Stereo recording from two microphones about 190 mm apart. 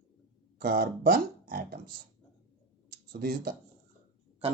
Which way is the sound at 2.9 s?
55° right (ahead or behind).